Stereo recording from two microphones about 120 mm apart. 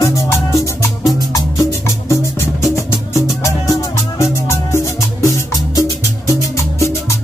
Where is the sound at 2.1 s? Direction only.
25° left (ahead or behind).